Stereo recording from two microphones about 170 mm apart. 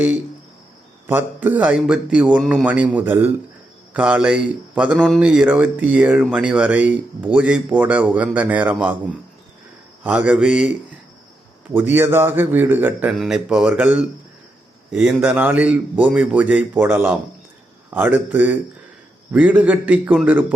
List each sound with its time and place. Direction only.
1.0 s speech: 10° right (ahead or behind)
10.0 s mantra: 5° right (ahead or behind)
11.7 s speech: 10° right (ahead or behind)